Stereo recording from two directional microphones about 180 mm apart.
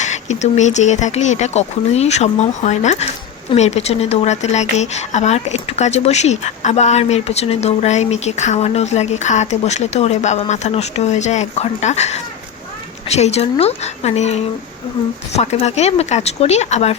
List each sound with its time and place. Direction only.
0.0 s speech: 40° left (ahead or behind)